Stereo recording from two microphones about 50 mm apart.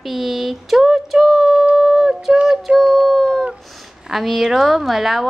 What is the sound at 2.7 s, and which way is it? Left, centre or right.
A woman's voice, centre.